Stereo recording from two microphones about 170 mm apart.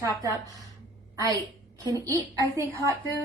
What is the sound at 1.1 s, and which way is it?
A woman's voice, 20° right (ahead or behind).